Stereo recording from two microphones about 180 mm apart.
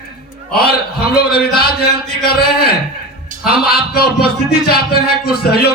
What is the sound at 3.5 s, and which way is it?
Speech, 60° left (ahead or behind).